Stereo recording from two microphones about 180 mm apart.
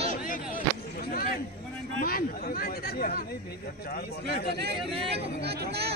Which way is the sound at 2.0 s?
55° left (ahead or behind).